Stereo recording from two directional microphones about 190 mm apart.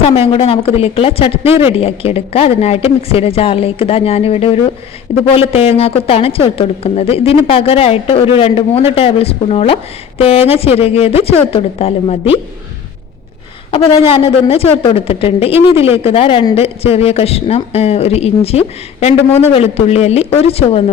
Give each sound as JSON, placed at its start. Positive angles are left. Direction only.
{"t": 0.3, "sound": "speech", "side_deg": 30}
{"t": 1.5, "sound": "speech", "side_deg": -10}
{"t": 1.8, "sound": "speech", "side_deg": 30}
{"t": 13.7, "sound": "a woman's voice", "side_deg": 30}